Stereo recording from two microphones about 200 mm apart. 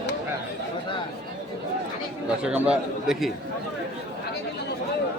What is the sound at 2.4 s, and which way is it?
Speech, 5° right (ahead or behind).